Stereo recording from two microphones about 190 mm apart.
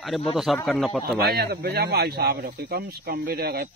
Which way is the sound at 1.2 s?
55° right (ahead or behind).